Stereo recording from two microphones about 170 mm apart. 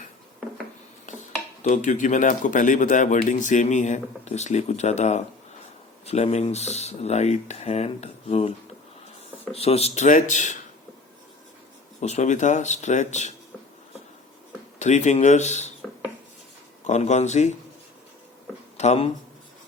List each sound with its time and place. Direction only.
1.6 s speech: 45° left (ahead or behind)
11.9 s speech: 40° left (ahead or behind)
14.8 s speech: 45° left (ahead or behind)
16.8 s speech: 45° left (ahead or behind)
18.8 s speech: 35° left (ahead or behind)